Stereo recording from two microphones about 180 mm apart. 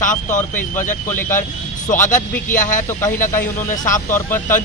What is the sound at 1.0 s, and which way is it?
Speech, 10° left (ahead or behind).